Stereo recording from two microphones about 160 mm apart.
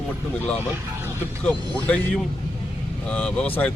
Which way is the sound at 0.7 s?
15° right (ahead or behind).